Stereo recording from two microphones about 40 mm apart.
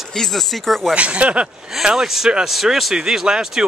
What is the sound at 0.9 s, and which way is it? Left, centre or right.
Speech, right.